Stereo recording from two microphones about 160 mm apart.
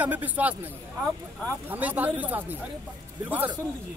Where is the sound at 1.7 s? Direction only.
10° right (ahead or behind).